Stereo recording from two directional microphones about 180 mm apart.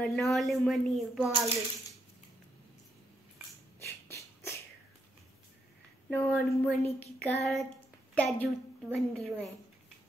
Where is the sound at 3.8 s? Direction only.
15° left (ahead or behind).